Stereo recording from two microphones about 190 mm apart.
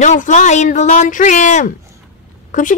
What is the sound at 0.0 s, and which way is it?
Speech, 40° left (ahead or behind).